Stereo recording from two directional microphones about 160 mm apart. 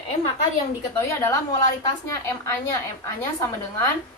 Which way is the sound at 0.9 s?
20° left (ahead or behind).